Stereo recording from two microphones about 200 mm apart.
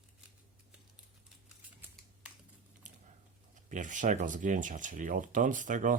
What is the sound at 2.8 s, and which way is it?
Typing, 40° right (ahead or behind).